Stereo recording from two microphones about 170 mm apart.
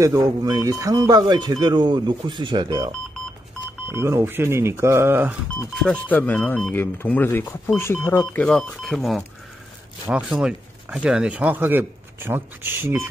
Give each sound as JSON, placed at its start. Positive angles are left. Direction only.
{"t": 0.0, "sound": "speech", "side_deg": -20}
{"t": 3.9, "sound": "speech", "side_deg": -15}
{"t": 5.8, "sound": "speech", "side_deg": 5}